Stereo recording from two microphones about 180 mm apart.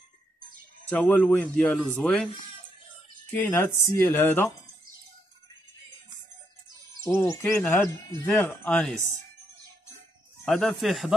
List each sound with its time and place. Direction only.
0.8 s a man's voice: 10° left (ahead or behind)
3.3 s speech: 10° left (ahead or behind)
7.0 s speech: 15° left (ahead or behind)
10.4 s a man's voice: 5° left (ahead or behind)